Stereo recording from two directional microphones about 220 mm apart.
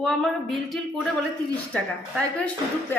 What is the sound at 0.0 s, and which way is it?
A woman's voice, centre (ahead or behind).